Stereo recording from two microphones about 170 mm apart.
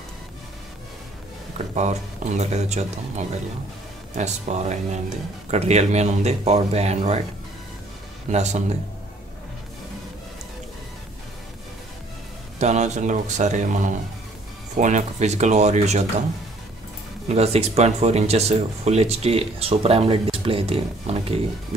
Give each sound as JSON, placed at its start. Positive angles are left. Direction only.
{"t": 1.8, "sound": "speech", "side_deg": -40}
{"t": 5.5, "sound": "speech", "side_deg": -40}
{"t": 8.3, "sound": "speech", "side_deg": -40}
{"t": 12.5, "sound": "speech", "side_deg": -45}
{"t": 17.3, "sound": "speech", "side_deg": -40}